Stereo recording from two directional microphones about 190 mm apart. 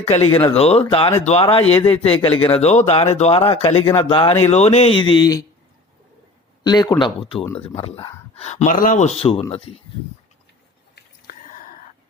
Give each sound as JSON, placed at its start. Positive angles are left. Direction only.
{"t": 0.3, "sound": "speech", "side_deg": 15}
{"t": 0.5, "sound": "speech", "side_deg": 30}
{"t": 6.7, "sound": "speech", "side_deg": 20}
{"t": 11.3, "sound": "whispering", "side_deg": 45}